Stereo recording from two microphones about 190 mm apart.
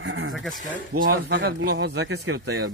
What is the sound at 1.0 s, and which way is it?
Speech, 55° right (ahead or behind).